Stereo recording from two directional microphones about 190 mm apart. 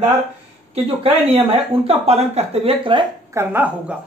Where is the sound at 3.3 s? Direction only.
10° right (ahead or behind).